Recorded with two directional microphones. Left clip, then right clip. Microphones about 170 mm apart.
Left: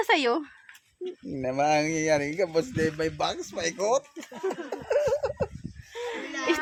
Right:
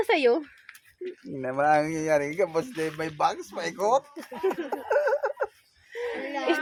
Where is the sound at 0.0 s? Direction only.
20° left (ahead or behind).